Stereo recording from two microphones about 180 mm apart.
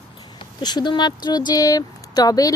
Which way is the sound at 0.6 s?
25° left (ahead or behind).